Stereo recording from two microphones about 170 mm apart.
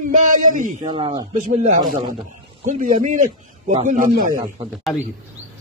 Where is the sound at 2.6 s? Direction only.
50° right (ahead or behind).